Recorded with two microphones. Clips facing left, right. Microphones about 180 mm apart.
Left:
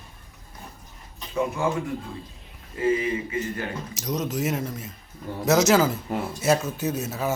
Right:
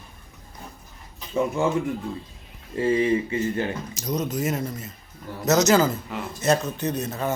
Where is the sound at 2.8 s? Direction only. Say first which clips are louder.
Right 3 dB; 30° right (ahead or behind).